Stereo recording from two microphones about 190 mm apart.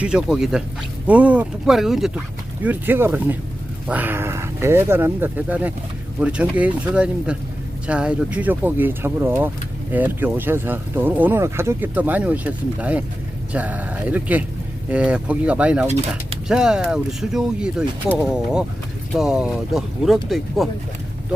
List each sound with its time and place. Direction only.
0.0 s speech: 5° right (ahead or behind)
15.9 s speech: 35° right (ahead or behind)
16.5 s speech: 5° right (ahead or behind)